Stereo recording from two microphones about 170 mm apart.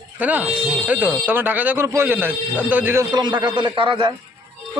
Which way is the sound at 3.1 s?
25° right (ahead or behind).